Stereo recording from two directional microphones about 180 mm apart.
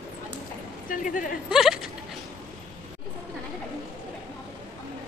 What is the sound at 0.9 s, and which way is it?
Speech, 45° left (ahead or behind).